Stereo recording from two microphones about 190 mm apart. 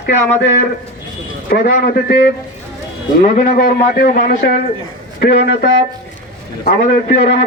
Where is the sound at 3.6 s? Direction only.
55° left (ahead or behind).